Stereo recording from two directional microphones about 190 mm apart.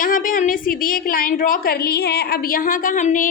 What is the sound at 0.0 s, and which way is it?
A woman's voice, 45° left (ahead or behind).